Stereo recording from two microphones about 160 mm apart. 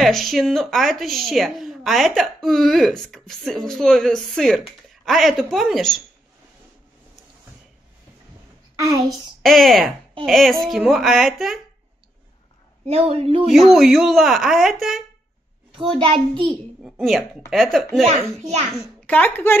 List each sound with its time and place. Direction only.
0.0 s a woman's voice: centre (ahead or behind)
8.7 s a woman's voice: 20° right (ahead or behind)
9.4 s a woman's voice: centre (ahead or behind)
12.8 s a child's voice: 40° right (ahead or behind)
13.5 s a woman's voice: centre (ahead or behind)
15.7 s a child's voice: 35° right (ahead or behind)
17.0 s a woman's voice: centre (ahead or behind)
19.0 s speech: 10° left (ahead or behind)